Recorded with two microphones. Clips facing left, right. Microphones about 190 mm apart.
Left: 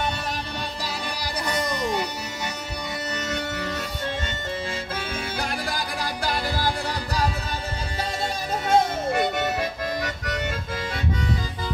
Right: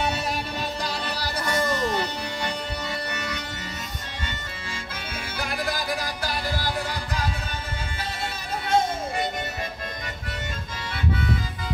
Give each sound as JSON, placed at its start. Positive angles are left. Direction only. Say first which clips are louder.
{"t": 1.2, "sound": "music", "louder": "right 1 dB", "side_deg": 15}
{"t": 5.4, "sound": "music", "louder": "right 4 dB", "side_deg": 50}
{"t": 8.6, "sound": "music", "louder": "left 2 dB", "side_deg": 65}